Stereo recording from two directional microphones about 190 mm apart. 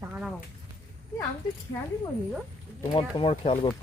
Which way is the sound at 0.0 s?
10° right (ahead or behind).